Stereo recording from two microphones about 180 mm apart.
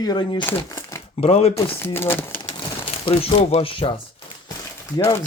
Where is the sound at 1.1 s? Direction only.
35° left (ahead or behind).